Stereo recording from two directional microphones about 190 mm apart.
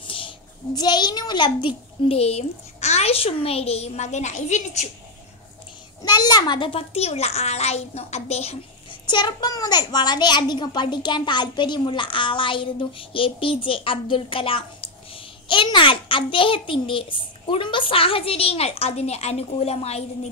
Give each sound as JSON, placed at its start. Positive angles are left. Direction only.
{"t": 0.0, "sound": "child singing", "side_deg": 30}
{"t": 0.7, "sound": "a child's voice", "side_deg": 20}
{"t": 6.0, "sound": "a child's voice", "side_deg": 20}
{"t": 9.0, "sound": "a child's voice", "side_deg": 25}